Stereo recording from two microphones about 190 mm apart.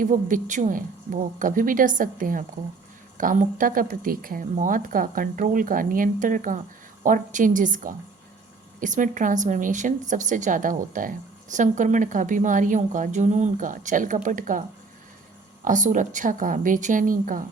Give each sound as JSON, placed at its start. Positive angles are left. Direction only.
{"t": 0.0, "sound": "a woman's voice", "side_deg": -45}
{"t": 15.6, "sound": "speech", "side_deg": -40}